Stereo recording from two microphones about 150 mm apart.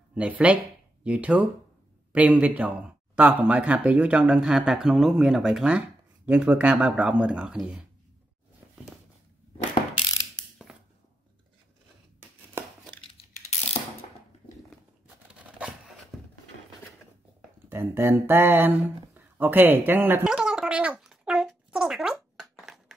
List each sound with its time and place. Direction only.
0.1 s speech: 5° right (ahead or behind)
12.2 s a sound: 15° right (ahead or behind)
13.2 s ratchet: 45° left (ahead or behind)
15.3 s a sound: 10° right (ahead or behind)
17.6 s speech: 15° right (ahead or behind)
19.1 s gargling: 15° right (ahead or behind)